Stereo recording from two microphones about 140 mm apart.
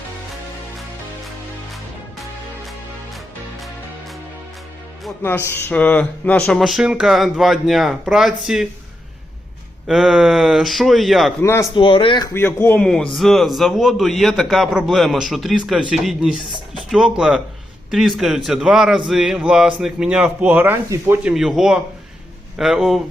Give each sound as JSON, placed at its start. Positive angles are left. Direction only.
{"t": 5.2, "sound": "speech", "side_deg": 15}
{"t": 9.8, "sound": "speech", "side_deg": -5}
{"t": 11.3, "sound": "a man's voice", "side_deg": 15}
{"t": 11.7, "sound": "speech", "side_deg": 35}
{"t": 12.2, "sound": "a man's voice", "side_deg": 15}
{"t": 21.3, "sound": "speech", "side_deg": 0}